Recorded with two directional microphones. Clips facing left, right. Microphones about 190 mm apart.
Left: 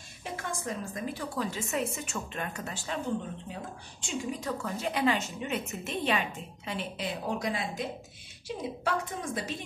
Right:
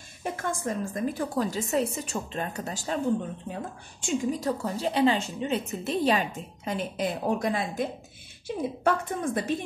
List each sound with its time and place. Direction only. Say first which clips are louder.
0.2 s a woman's voice: right 6 dB; 50° right (ahead or behind)
4.0 s a woman's voice: right 7 dB; 40° right (ahead or behind)